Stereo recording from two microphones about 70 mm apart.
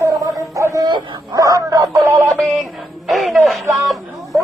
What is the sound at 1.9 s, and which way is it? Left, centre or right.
Synthetic singing, right.